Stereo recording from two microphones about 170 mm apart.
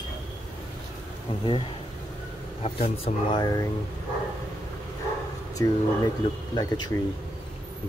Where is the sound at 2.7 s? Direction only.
40° left (ahead or behind).